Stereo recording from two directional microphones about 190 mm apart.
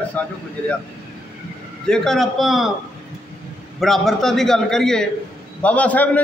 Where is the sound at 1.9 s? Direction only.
Centre (ahead or behind).